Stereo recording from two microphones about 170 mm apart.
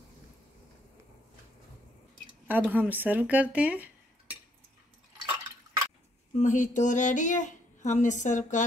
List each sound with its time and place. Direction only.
2.4 s speech: 10° right (ahead or behind)
6.3 s speech: 45° left (ahead or behind)